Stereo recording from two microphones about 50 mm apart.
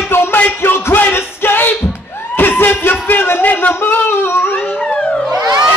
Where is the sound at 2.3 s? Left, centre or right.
Left.